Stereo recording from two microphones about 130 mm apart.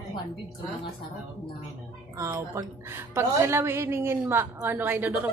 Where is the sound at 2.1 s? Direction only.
20° right (ahead or behind).